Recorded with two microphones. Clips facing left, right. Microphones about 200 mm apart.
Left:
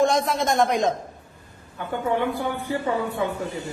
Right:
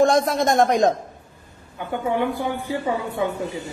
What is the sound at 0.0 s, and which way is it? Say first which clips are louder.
Speech: right 3 dB; 45° right (ahead or behind).